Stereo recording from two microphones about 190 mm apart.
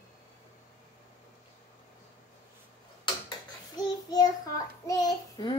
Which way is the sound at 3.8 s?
20° left (ahead or behind).